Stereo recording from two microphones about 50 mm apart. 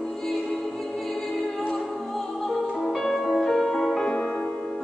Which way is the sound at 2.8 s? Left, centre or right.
Centre.